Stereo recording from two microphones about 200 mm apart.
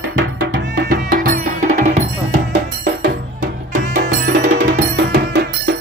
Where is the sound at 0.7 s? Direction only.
45° right (ahead or behind).